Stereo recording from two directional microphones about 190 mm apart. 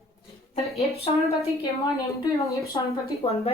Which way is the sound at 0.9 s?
35° left (ahead or behind).